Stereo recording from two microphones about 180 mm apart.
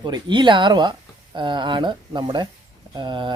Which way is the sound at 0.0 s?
25° right (ahead or behind).